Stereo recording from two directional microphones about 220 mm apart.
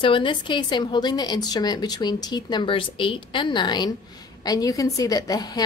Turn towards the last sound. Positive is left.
turn(degrees=15)  # may be behind; listen again after turning